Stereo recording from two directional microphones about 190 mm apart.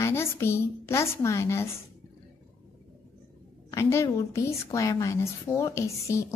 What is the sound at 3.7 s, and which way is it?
A woman's voice, 15° left (ahead or behind).